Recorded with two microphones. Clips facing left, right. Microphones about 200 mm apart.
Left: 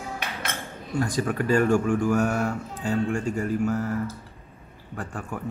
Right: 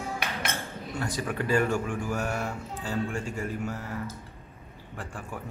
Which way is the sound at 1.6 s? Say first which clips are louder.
Left 8 dB; 50° left (ahead or behind).